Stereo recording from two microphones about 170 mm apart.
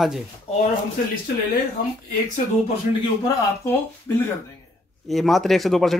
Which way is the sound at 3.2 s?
15° left (ahead or behind).